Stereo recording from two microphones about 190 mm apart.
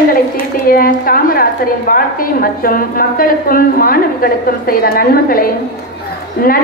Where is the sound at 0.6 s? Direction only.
50° left (ahead or behind).